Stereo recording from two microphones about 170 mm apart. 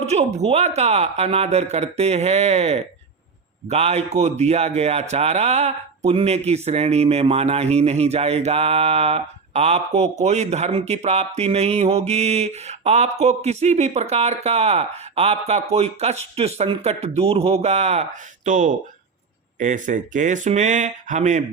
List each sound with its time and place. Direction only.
0.0 s a man's voice: 40° right (ahead or behind)